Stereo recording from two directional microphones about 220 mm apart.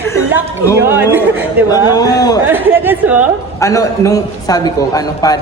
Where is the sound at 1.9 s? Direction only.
15° left (ahead or behind).